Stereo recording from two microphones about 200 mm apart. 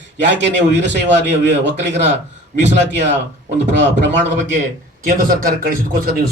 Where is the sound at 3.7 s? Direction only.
60° right (ahead or behind).